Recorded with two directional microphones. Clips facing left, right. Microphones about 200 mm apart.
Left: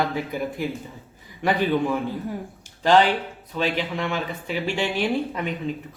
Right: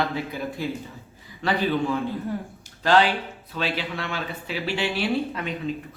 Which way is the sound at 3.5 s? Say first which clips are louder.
Left 4 dB; 15° left (ahead or behind).